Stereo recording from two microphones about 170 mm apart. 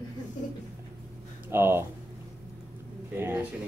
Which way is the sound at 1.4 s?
15° right (ahead or behind).